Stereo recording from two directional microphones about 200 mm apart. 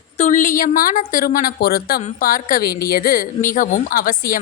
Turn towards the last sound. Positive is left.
turn(degrees=45)  # may be behind; listen again after turning